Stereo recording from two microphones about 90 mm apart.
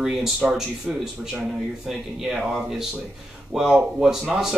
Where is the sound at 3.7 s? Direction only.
10° right (ahead or behind).